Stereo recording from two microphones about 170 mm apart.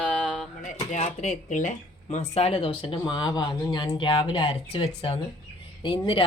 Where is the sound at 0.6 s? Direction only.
45° left (ahead or behind).